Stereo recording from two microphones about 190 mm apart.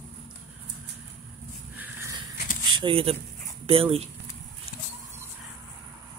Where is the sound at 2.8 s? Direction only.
30° right (ahead or behind).